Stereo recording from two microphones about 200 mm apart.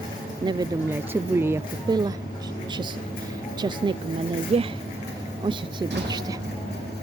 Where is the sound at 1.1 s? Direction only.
10° right (ahead or behind).